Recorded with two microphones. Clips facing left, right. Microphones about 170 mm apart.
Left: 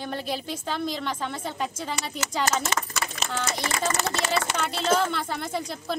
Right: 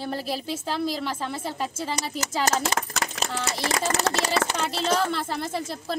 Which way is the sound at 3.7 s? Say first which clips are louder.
Right 5 dB; 90° right.